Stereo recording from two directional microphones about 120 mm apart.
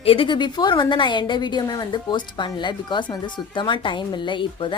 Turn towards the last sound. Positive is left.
turn(degrees=45)  # may be behind; listen again after turning